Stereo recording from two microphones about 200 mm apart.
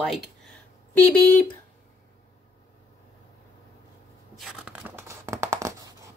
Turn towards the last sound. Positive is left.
turn(degrees=-15)  # may be behind; listen again after turning